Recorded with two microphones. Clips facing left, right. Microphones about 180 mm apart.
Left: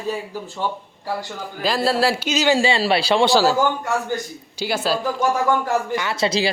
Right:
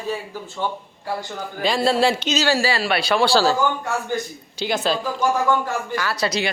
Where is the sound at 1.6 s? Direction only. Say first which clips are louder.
Right 1 dB; centre (ahead or behind).